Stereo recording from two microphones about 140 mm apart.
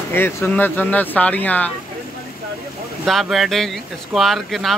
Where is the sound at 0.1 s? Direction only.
15° left (ahead or behind).